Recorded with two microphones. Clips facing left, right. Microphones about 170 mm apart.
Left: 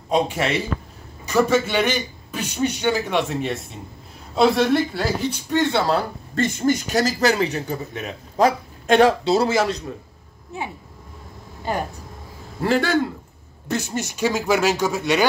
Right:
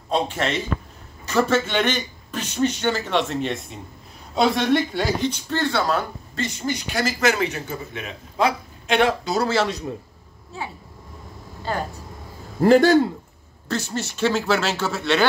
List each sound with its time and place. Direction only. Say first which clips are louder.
0.1 s a man's voice: left 2 dB; 10° left (ahead or behind)
5.5 s speech: left 4 dB; 20° left (ahead or behind)
6.3 s a man's voice: left 7 dB; 50° left (ahead or behind)
9.2 s speech: left 4 dB; 30° left (ahead or behind)
11.7 s a man's voice: left 2 dB; 15° left (ahead or behind)
12.6 s a man's voice: right 6 dB; 40° right (ahead or behind)
13.7 s a man's voice: left 1 dB; 20° left (ahead or behind)